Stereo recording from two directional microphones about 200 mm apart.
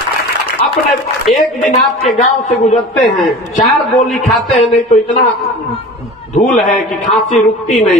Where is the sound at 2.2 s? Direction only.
40° left (ahead or behind).